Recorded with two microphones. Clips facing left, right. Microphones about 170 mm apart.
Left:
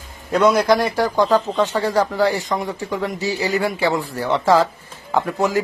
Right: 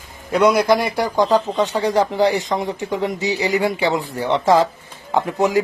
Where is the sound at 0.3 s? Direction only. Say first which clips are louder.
Even; 10° right (ahead or behind).